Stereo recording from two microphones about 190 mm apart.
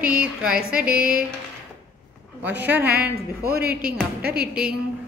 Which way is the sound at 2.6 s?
10° right (ahead or behind).